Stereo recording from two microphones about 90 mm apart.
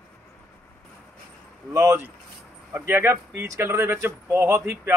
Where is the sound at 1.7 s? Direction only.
25° right (ahead or behind).